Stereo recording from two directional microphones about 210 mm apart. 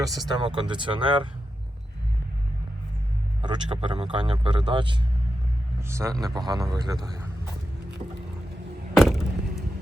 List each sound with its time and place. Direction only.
0.0 s speech: 15° right (ahead or behind)
3.4 s a man's voice: 20° right (ahead or behind)
9.0 s a sound: centre (ahead or behind)